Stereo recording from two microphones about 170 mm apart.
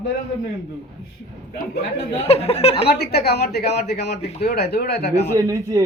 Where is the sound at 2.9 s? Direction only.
70° left (ahead or behind).